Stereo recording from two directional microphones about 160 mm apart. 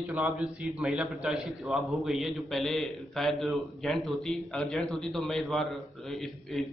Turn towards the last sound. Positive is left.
turn(degrees=0)  # may be behind; listen again after turning